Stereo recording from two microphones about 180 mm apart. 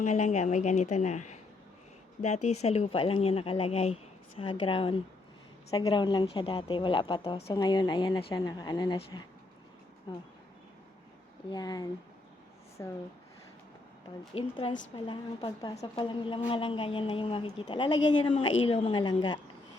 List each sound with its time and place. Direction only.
0.0 s a woman's voice: 40° left (ahead or behind); by 10.2 s 25° left (ahead or behind)
11.5 s a woman's voice: 20° left (ahead or behind)
14.3 s a woman's voice: 30° left (ahead or behind)